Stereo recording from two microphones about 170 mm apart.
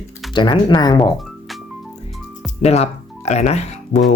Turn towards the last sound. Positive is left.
turn(degrees=40)  # may be behind; listen again after turning